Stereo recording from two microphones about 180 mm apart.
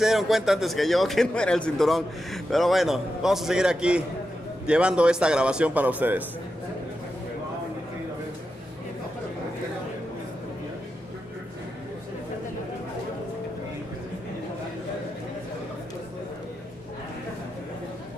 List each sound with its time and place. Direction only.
0.0 s a man's voice: centre (ahead or behind)